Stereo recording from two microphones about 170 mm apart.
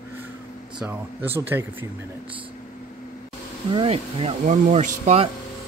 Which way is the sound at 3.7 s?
35° right (ahead or behind).